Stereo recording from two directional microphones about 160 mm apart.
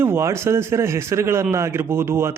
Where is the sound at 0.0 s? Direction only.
15° right (ahead or behind).